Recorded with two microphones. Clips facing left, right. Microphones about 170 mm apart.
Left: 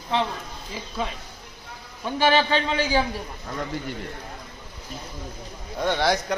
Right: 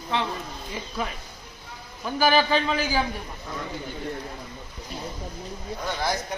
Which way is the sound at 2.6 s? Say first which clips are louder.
Left 2 dB; 30° left (ahead or behind).